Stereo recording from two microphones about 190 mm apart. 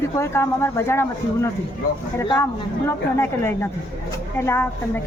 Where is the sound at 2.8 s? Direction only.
10° left (ahead or behind).